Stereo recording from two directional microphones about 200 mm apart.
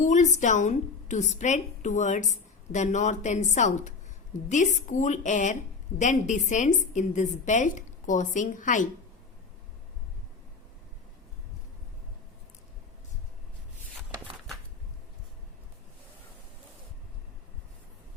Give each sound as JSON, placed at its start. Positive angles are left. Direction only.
{"t": 0.0, "sound": "a woman's voice", "side_deg": 35}